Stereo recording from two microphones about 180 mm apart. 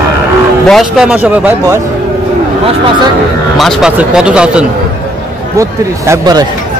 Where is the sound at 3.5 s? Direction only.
Centre (ahead or behind).